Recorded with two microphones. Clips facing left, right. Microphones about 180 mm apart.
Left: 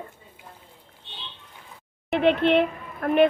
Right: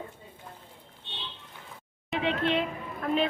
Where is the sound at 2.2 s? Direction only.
70° left (ahead or behind).